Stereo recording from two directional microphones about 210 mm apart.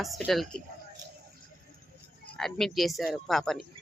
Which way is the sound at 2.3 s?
Centre (ahead or behind).